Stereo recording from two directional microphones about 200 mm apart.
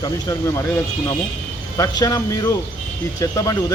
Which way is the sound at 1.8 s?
20° left (ahead or behind).